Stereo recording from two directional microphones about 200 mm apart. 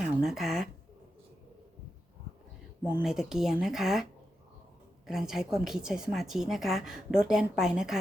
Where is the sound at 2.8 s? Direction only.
5° right (ahead or behind).